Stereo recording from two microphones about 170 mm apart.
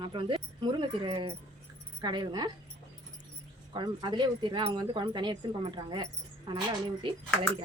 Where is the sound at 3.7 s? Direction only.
25° right (ahead or behind).